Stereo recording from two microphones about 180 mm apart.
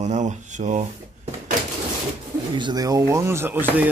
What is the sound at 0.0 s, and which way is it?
Speech, 40° right (ahead or behind).